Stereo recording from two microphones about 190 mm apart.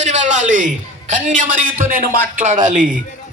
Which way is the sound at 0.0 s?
40° right (ahead or behind).